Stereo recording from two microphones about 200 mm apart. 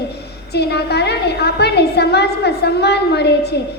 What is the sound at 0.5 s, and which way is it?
A woman's voice, 55° left (ahead or behind).